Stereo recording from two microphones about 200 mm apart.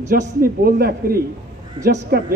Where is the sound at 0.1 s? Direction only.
45° right (ahead or behind).